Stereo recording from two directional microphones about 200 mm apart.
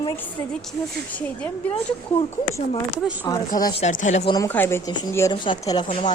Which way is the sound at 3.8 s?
40° left (ahead or behind).